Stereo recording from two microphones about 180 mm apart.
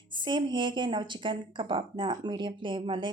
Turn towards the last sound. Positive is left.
turn(degrees=-25)  # may be behind; listen again after turning